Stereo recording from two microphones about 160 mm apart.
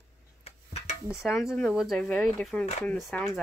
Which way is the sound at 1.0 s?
Centre (ahead or behind).